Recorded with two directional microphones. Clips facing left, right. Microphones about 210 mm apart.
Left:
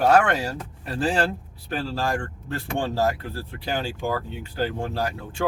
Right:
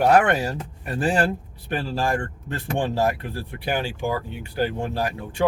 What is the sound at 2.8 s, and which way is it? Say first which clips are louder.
Speech: right 1 dB; 20° right (ahead or behind).